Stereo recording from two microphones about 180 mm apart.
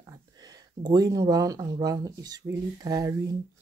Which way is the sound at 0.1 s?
20° right (ahead or behind).